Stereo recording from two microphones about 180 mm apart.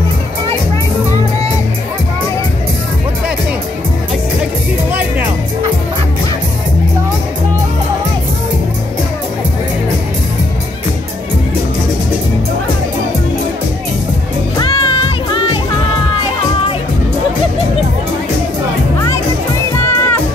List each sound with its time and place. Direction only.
14.6 s music: 30° left (ahead or behind)
19.8 s music: 10° left (ahead or behind)